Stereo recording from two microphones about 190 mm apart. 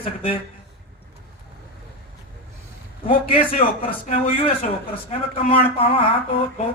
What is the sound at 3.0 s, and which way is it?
A man's voice, 30° left (ahead or behind).